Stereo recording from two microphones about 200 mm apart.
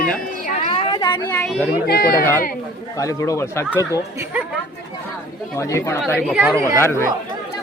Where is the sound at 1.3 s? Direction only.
5° left (ahead or behind).